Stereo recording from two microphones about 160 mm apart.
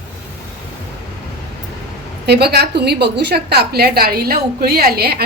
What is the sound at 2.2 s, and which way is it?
A woman's voice, 90° right.